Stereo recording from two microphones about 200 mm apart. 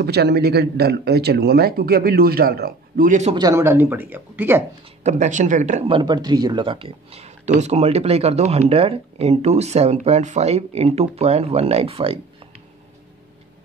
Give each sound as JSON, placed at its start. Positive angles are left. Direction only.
{"t": 0.0, "sound": "speech", "side_deg": -55}
{"t": 3.3, "sound": "speech", "side_deg": -15}
{"t": 5.0, "sound": "speech", "side_deg": -35}